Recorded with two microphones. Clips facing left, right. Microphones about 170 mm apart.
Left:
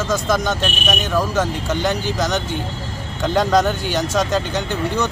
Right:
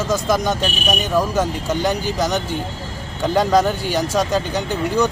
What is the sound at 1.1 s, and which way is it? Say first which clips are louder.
Speech: right 1 dB; 10° right (ahead or behind).